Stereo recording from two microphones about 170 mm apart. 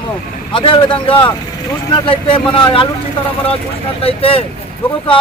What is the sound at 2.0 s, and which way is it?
Speech, 30° left (ahead or behind).